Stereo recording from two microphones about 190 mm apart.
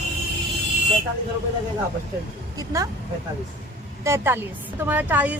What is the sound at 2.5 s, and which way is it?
Speech, 15° right (ahead or behind).